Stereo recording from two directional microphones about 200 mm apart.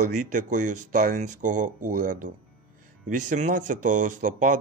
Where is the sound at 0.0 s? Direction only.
40° right (ahead or behind).